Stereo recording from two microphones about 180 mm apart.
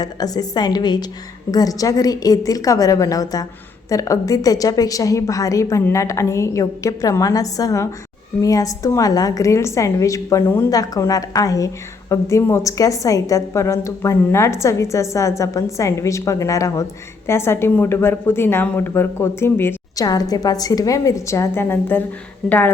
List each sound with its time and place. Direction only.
0.0 s a woman's voice: 20° left (ahead or behind)